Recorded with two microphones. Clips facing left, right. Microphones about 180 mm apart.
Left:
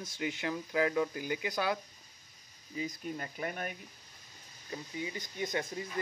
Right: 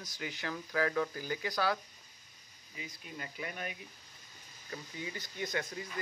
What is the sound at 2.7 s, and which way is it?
Speech, 40° left (ahead or behind).